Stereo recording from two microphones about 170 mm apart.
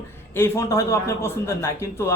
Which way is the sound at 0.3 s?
15° left (ahead or behind).